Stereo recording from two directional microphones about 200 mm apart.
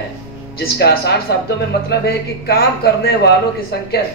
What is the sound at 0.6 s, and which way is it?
Speech, 55° left (ahead or behind).